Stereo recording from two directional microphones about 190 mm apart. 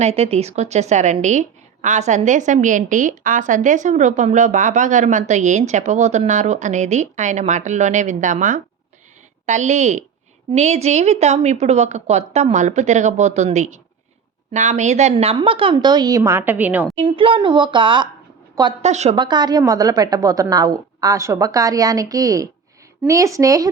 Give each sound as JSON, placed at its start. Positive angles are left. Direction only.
{"t": 0.0, "sound": "a woman's voice", "side_deg": -35}
{"t": 16.9, "sound": "a woman's voice", "side_deg": -30}
{"t": 18.8, "sound": "a woman's voice", "side_deg": -35}
{"t": 19.1, "sound": "a woman's voice", "side_deg": -25}